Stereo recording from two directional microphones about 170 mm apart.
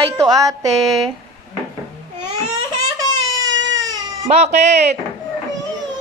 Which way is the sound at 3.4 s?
90° right.